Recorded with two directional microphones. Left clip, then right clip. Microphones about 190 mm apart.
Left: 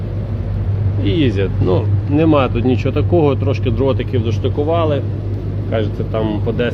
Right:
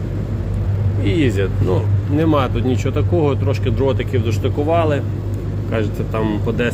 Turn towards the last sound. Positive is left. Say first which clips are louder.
# left 1 dB
turn(degrees=10)  # may be behind; listen again after turning